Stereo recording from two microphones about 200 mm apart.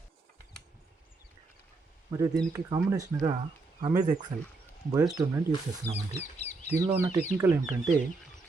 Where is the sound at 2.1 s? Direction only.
15° right (ahead or behind).